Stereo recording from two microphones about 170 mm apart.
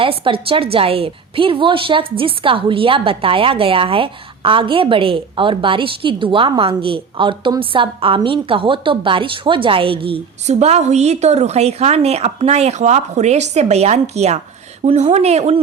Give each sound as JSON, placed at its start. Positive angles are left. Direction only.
{"t": 0.0, "sound": "a woman's voice", "side_deg": -30}